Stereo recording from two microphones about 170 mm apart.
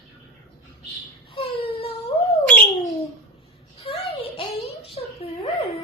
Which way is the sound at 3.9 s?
35° left (ahead or behind).